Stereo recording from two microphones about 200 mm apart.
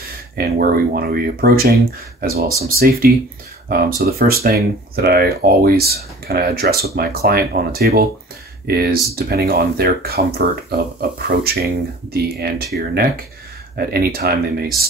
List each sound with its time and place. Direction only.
0.4 s speech: 50° right (ahead or behind)